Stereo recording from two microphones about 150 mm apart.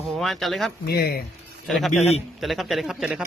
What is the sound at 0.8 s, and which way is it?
Speech, 90° left.